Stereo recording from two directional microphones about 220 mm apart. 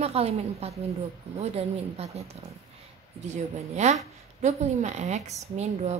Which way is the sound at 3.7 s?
30° right (ahead or behind).